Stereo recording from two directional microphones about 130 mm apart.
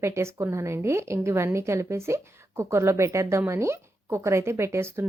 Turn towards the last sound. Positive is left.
turn(degrees=-20)  # may be behind; listen again after turning